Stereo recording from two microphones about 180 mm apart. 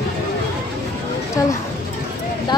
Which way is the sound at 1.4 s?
15° left (ahead or behind).